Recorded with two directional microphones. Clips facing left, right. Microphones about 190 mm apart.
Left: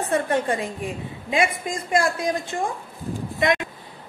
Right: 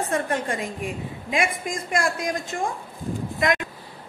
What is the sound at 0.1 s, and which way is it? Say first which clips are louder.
A woman's voice: left 7 dB; 30° left (ahead or behind).